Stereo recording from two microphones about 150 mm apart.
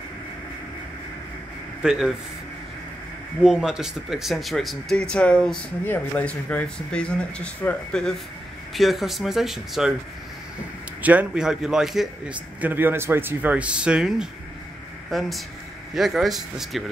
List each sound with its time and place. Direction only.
1.8 s speech: 5° right (ahead or behind)
3.4 s speech: 5° right (ahead or behind)
11.0 s a man's voice: 10° right (ahead or behind)